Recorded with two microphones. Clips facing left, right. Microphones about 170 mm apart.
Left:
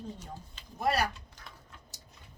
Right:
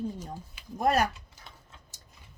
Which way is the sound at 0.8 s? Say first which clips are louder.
Right 4 dB; 45° right (ahead or behind).